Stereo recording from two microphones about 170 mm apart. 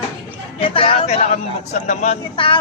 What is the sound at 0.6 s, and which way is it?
Speech, 30° left (ahead or behind).